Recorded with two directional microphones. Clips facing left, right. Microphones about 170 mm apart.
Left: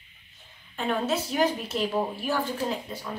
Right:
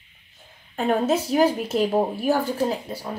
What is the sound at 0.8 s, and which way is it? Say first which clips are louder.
A woman's voice: right 6 dB; 40° right (ahead or behind).